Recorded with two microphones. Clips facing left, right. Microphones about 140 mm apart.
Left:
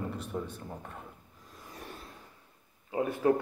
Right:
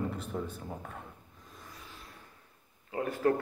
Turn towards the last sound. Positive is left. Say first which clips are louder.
# left 1 dB
turn(degrees=20)  # may be behind; listen again after turning